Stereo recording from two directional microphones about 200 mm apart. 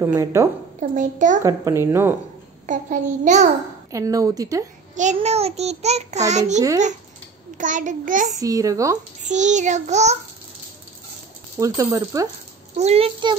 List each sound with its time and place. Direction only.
0.0 s speech: 15° right (ahead or behind)
0.7 s a child's voice: 40° right (ahead or behind)
1.4 s speech: 15° right (ahead or behind)
2.6 s a child's voice: 40° right (ahead or behind)
3.9 s speech: 15° right (ahead or behind)
4.9 s a child's voice: 35° right (ahead or behind)
8.4 s speech: 15° right (ahead or behind)
9.2 s a child's voice: 35° right (ahead or behind)
11.5 s speech: 15° right (ahead or behind)
12.7 s a child's voice: 30° right (ahead or behind)